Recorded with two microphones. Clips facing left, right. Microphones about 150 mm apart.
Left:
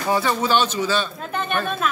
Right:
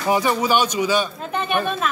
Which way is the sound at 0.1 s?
15° right (ahead or behind).